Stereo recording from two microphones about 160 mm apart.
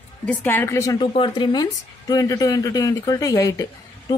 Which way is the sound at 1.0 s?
30° left (ahead or behind).